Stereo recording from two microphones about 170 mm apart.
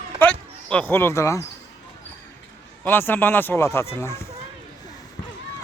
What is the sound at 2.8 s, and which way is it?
A man's voice, 10° left (ahead or behind).